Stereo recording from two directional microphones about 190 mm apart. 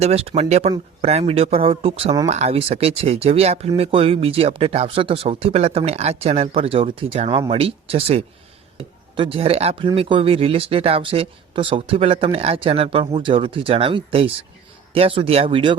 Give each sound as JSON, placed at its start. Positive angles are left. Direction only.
{"t": 0.0, "sound": "speech", "side_deg": -35}